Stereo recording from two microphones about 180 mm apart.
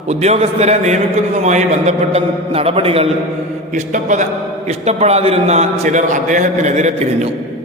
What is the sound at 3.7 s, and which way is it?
A man's voice, 45° right (ahead or behind).